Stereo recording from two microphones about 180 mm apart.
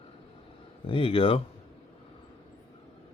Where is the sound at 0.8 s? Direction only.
30° left (ahead or behind).